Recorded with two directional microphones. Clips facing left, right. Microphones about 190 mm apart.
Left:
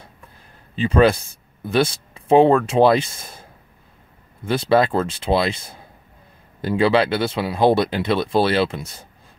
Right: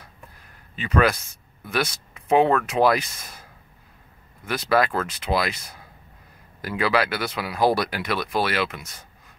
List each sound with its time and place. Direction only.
0.7 s speech: 30° left (ahead or behind)
4.5 s speech: 30° left (ahead or behind)